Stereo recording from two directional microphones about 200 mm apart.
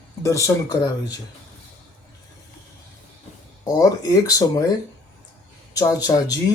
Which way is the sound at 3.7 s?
15° left (ahead or behind).